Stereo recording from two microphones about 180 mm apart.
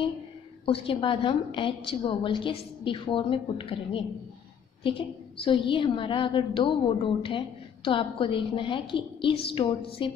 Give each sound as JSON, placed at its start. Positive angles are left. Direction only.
{"t": 0.7, "sound": "a woman's voice", "side_deg": 30}